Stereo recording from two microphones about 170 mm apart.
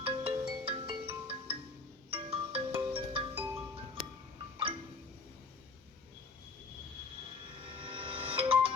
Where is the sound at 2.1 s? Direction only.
35° right (ahead or behind).